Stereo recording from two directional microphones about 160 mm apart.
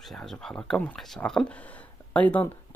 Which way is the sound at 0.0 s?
Centre (ahead or behind).